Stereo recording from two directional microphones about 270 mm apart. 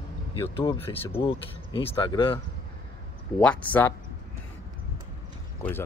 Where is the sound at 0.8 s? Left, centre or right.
Centre.